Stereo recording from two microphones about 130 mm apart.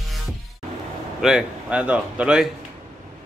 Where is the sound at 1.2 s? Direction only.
5° right (ahead or behind).